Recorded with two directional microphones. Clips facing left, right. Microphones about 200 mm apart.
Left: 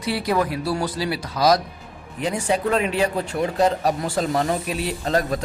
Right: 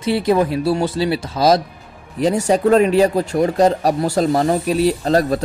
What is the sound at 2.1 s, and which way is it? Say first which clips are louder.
Speech: right 7 dB; 40° right (ahead or behind).